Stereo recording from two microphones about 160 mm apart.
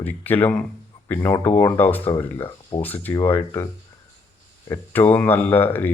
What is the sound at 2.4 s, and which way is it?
Speech, 30° left (ahead or behind).